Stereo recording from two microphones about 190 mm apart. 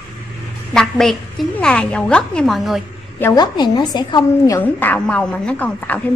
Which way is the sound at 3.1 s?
15° left (ahead or behind).